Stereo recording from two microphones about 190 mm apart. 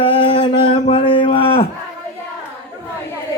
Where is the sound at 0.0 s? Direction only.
25° left (ahead or behind).